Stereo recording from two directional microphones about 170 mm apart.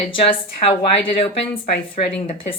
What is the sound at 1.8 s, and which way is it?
Speech, 35° left (ahead or behind).